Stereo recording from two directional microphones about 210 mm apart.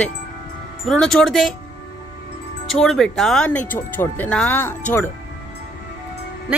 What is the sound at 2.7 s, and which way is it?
Speech, centre (ahead or behind).